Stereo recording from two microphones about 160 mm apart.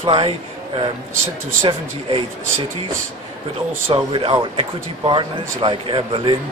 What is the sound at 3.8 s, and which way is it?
Speech, 35° right (ahead or behind).